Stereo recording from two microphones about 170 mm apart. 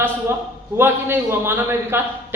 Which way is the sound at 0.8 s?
15° right (ahead or behind).